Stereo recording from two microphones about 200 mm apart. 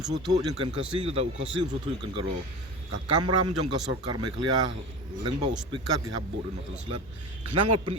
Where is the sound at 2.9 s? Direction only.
25° right (ahead or behind).